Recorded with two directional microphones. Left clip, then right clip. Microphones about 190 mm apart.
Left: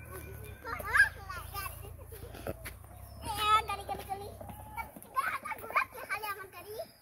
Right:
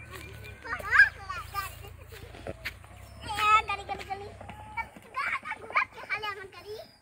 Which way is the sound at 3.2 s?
15° left (ahead or behind).